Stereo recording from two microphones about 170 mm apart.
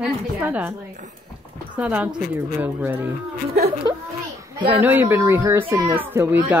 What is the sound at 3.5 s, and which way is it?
Speech, 40° right (ahead or behind).